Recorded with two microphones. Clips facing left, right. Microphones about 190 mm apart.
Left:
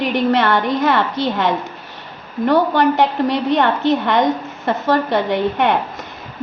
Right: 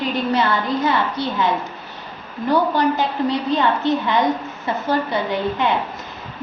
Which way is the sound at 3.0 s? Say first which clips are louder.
Left 4 dB; 90° left.